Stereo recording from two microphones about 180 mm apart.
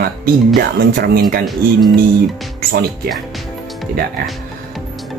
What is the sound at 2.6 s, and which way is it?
Speech, 55° right (ahead or behind).